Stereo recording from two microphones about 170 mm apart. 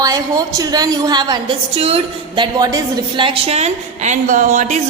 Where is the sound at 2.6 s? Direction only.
25° right (ahead or behind); by 4.8 s 45° right (ahead or behind).